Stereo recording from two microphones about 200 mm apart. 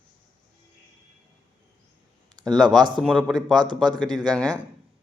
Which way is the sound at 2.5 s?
20° right (ahead or behind).